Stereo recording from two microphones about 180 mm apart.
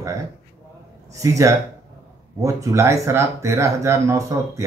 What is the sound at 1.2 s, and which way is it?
Speech, 15° right (ahead or behind).